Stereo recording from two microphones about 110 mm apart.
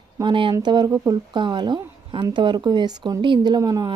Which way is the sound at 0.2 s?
45° right (ahead or behind).